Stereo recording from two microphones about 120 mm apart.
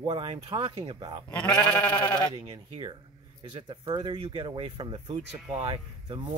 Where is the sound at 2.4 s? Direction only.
40° right (ahead or behind).